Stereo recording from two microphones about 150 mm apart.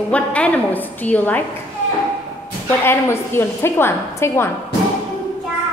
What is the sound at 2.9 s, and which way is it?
A woman's voice, 15° left (ahead or behind).